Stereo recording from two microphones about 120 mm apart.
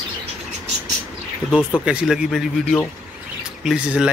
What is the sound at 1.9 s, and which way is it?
Speech, 5° right (ahead or behind).